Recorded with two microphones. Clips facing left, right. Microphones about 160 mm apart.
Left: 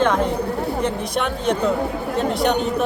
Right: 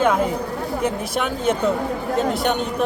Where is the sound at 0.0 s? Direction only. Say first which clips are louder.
Even; 5° right (ahead or behind).